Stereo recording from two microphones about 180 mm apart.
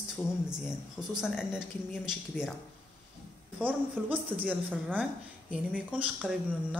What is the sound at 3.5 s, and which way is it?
A woman's voice, 10° right (ahead or behind).